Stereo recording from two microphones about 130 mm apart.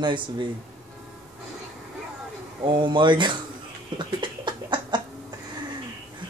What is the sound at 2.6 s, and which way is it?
Speech, 40° right (ahead or behind).